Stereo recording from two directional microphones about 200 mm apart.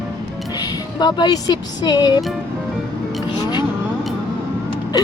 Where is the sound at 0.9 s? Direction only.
20° left (ahead or behind).